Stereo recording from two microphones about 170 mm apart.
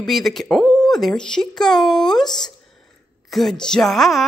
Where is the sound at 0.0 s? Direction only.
Centre (ahead or behind).